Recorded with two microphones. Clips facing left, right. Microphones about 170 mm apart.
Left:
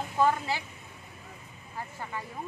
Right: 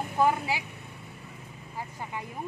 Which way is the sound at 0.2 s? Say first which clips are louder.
Right 1 dB; 10° right (ahead or behind).